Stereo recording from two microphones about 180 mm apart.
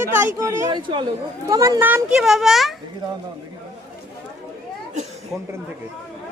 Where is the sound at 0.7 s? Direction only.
25° right (ahead or behind); by 2.7 s centre (ahead or behind).